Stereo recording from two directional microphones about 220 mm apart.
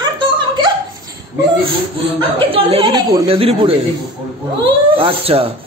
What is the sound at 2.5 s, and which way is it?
A man's voice, 25° right (ahead or behind).